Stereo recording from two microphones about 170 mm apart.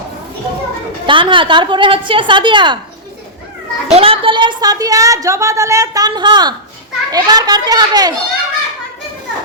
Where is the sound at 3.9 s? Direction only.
30° right (ahead or behind).